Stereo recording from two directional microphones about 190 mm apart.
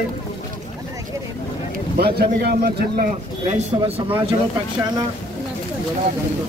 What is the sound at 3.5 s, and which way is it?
Speech, 35° right (ahead or behind).